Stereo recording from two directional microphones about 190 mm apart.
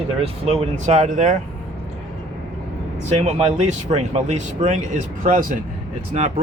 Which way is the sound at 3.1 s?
35° right (ahead or behind).